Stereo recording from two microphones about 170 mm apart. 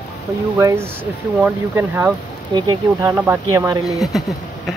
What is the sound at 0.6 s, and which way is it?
Speech, 15° right (ahead or behind).